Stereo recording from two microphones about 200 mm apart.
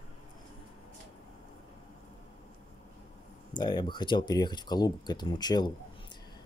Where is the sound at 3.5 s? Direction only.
20° left (ahead or behind).